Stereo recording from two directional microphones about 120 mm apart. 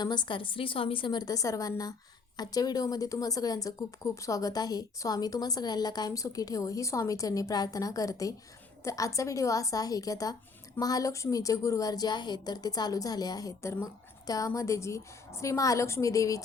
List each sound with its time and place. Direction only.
0.0 s a woman's voice: 40° left (ahead or behind)